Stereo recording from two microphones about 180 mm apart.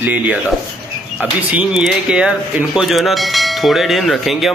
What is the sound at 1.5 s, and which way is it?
Speech, 5° right (ahead or behind).